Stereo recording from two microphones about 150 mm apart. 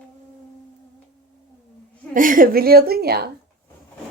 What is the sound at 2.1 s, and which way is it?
A woman's voice, 65° right (ahead or behind).